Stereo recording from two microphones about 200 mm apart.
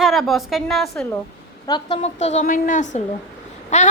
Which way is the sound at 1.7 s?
30° left (ahead or behind).